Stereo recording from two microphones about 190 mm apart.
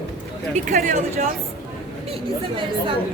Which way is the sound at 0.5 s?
40° right (ahead or behind).